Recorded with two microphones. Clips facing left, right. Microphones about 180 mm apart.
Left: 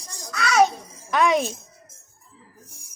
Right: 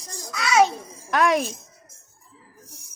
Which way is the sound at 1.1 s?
Centre (ahead or behind).